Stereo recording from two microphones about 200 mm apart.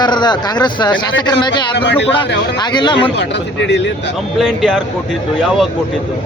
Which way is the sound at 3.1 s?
60° left (ahead or behind).